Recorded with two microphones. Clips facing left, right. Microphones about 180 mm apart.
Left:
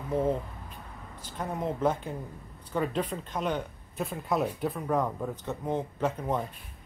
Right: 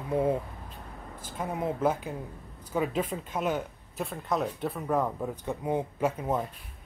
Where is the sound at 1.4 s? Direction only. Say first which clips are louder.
Right 1 dB; 5° right (ahead or behind).